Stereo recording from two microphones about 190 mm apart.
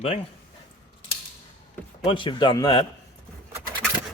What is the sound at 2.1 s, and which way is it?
Speech, 25° left (ahead or behind).